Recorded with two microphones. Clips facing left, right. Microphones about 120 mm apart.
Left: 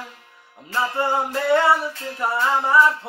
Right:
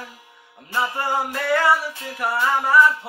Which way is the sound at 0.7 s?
15° right (ahead or behind).